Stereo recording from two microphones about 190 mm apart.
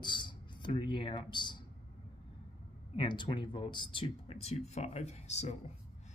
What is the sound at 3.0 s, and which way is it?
Speech, 25° left (ahead or behind).